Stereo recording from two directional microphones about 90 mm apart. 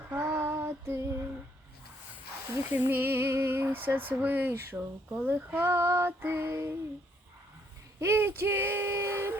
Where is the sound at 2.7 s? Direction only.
20° right (ahead or behind).